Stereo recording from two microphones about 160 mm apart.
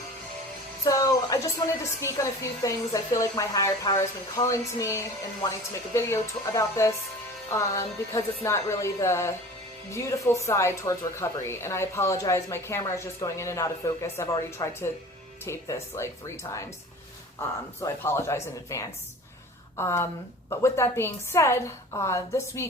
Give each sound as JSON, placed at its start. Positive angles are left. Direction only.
{"t": 0.9, "sound": "music", "side_deg": 20}
{"t": 2.0, "sound": "speech", "side_deg": 15}
{"t": 17.7, "sound": "speech", "side_deg": 15}